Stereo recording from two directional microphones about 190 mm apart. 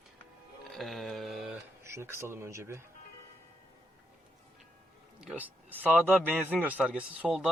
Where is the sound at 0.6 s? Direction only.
Centre (ahead or behind).